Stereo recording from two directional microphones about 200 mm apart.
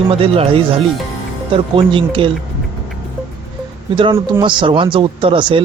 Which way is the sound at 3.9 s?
20° right (ahead or behind).